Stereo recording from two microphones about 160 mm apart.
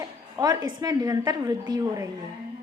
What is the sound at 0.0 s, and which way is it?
A woman's voice, 20° right (ahead or behind).